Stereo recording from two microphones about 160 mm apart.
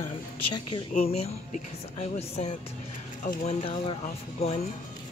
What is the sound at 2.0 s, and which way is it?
Speech, 40° left (ahead or behind).